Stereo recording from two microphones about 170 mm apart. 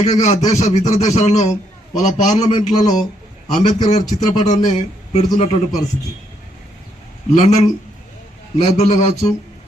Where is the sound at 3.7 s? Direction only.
40° left (ahead or behind).